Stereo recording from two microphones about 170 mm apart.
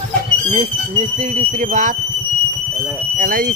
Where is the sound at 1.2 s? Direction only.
40° right (ahead or behind).